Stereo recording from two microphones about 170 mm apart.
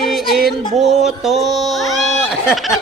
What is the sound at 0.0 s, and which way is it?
Music, centre (ahead or behind).